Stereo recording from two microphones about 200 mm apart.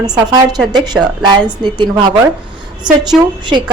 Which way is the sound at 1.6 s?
25° right (ahead or behind).